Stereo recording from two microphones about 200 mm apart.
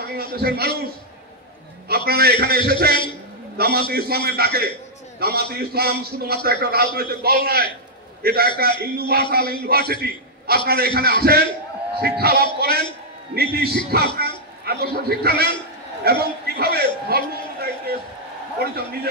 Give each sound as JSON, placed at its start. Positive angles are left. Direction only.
{"t": 0.1, "sound": "a man's voice", "side_deg": -50}
{"t": 1.9, "sound": "a man's voice", "side_deg": -50}
{"t": 16.0, "sound": "a sound", "side_deg": -50}
{"t": 18.6, "sound": "a man's voice", "side_deg": -55}